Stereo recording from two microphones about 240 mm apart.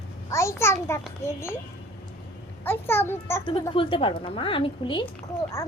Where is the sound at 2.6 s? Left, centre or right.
Centre.